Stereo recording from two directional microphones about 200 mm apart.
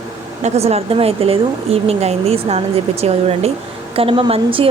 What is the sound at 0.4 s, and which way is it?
Speech, 30° right (ahead or behind).